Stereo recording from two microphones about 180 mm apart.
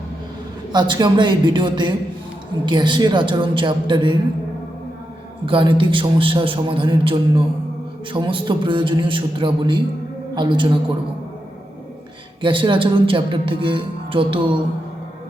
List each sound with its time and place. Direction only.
0.7 s speech: 25° right (ahead or behind)
5.5 s speech: 30° right (ahead or behind)
12.4 s speech: 30° right (ahead or behind)